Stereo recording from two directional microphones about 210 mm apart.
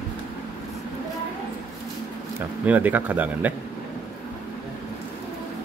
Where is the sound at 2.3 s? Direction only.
10° right (ahead or behind).